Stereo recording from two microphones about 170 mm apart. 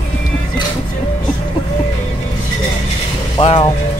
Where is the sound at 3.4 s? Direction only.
30° left (ahead or behind).